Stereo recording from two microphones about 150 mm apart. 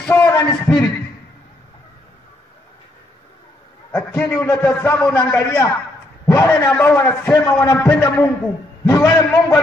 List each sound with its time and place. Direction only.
0.1 s a sound: 15° left (ahead or behind)
0.5 s a man's voice: 5° left (ahead or behind)
3.9 s a man's voice: 15° left (ahead or behind)